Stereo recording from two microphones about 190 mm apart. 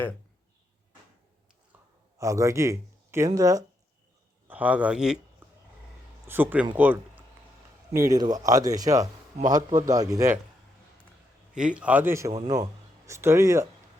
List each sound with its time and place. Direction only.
1.7 s a sound: 5° right (ahead or behind)
2.1 s speech: 15° right (ahead or behind)
4.4 s speech: 10° right (ahead or behind)
5.4 s a sound: 10° right (ahead or behind)
6.2 s a man's voice: 10° right (ahead or behind)
11.5 s a man's voice: 5° right (ahead or behind)
12.3 s speech: 25° right (ahead or behind)
13.1 s a man's voice: 15° right (ahead or behind)